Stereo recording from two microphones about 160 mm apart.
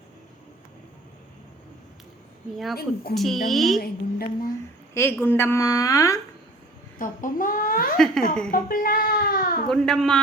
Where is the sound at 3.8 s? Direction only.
70° left (ahead or behind).